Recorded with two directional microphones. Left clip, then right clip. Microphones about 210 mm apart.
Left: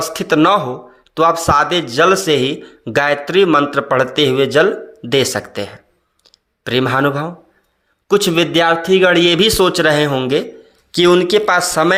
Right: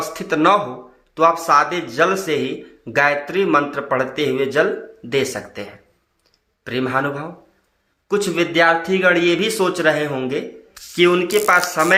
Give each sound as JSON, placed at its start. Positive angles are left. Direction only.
{"t": 0.0, "sound": "speech", "side_deg": 40}